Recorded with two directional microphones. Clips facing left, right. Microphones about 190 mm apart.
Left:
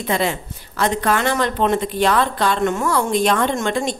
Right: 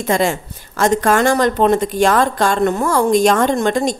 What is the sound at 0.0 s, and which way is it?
A woman's voice, 45° right (ahead or behind).